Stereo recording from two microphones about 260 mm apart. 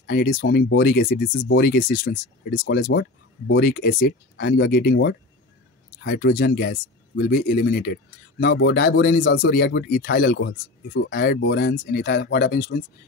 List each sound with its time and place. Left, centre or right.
0.0 s speech: left